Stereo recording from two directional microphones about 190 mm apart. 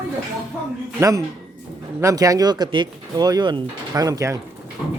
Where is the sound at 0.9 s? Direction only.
15° right (ahead or behind).